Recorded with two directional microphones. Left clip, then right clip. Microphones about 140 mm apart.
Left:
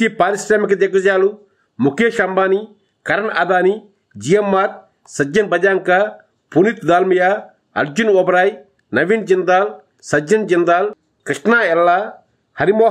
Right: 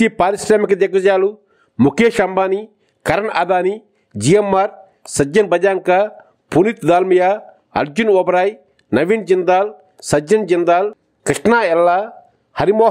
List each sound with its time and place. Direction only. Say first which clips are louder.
0.0 s speech: right 1 dB; 35° right (ahead or behind)